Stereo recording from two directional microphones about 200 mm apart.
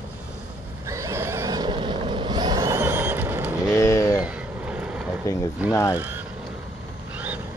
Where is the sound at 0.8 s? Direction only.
15° right (ahead or behind).